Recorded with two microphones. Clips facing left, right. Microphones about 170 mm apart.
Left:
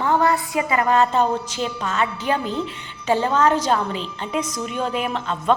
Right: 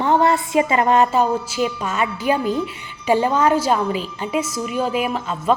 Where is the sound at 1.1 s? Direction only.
10° right (ahead or behind).